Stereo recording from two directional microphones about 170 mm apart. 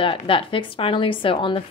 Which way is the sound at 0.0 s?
30° left (ahead or behind).